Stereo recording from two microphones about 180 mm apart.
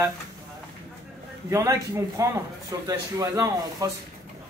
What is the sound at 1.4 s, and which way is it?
A man's voice, 15° right (ahead or behind).